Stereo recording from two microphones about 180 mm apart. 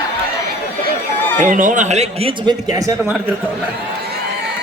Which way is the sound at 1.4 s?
45° right (ahead or behind).